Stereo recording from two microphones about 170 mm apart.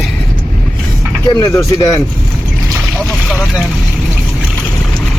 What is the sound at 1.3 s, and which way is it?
Speech, 20° left (ahead or behind).